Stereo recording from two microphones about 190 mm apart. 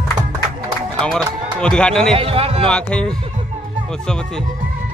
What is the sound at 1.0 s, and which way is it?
Music, 5° left (ahead or behind).